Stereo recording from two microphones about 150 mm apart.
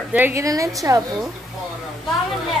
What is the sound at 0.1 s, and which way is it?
Speech, 15° right (ahead or behind).